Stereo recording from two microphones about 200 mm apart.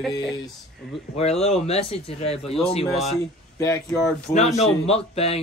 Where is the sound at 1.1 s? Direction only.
30° left (ahead or behind).